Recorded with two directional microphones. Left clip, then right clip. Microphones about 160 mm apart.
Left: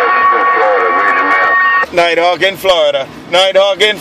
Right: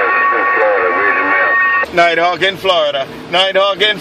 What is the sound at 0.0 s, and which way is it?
Radio, 45° left (ahead or behind).